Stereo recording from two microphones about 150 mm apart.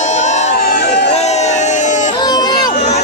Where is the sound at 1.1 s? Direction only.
45° left (ahead or behind).